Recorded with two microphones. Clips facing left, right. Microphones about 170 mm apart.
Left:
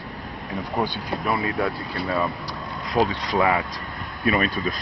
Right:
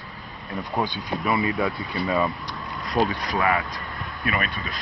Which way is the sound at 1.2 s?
Centre (ahead or behind).